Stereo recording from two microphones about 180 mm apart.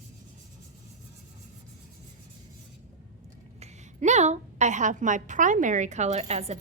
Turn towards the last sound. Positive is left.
turn(degrees=-35)  # may be behind; listen again after turning